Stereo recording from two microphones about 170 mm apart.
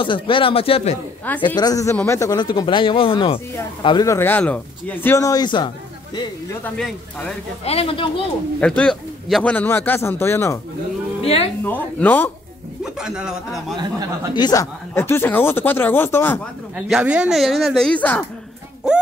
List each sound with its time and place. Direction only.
0.0 s speech: 30° left (ahead or behind)
1.6 s speech: 20° left (ahead or behind)
6.6 s speech: 5° left (ahead or behind)
7.6 s speech: 35° left (ahead or behind)
8.5 s speech: 5° left (ahead or behind)
11.2 s speech: 35° left (ahead or behind)
11.6 s speech: 10° left (ahead or behind)
12.8 s speech: 5° right (ahead or behind)
14.3 s speech: 20° left (ahead or behind)
16.7 s speech: 5° right (ahead or behind); by 18.2 s 10° left (ahead or behind)